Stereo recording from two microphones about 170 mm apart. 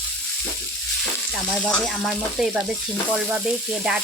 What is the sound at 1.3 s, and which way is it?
Frying, centre (ahead or behind).